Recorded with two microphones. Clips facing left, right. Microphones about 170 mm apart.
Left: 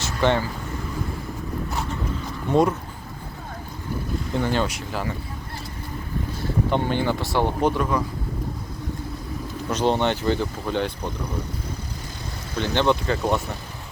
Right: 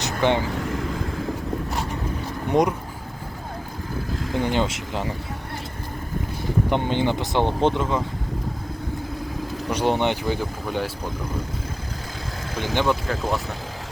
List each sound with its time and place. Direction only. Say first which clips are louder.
0.0 s vehicle: even; 15° right (ahead or behind)
2.5 s speech: left 1 dB; 15° right (ahead or behind)
4.4 s speech: right 1 dB; 15° right (ahead or behind)
6.7 s speech: even; 20° right (ahead or behind)
9.6 s speech: even; 15° right (ahead or behind)
12.7 s speech: left 2 dB; 5° right (ahead or behind)